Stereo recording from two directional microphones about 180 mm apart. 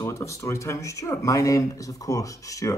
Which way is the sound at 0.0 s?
15° left (ahead or behind).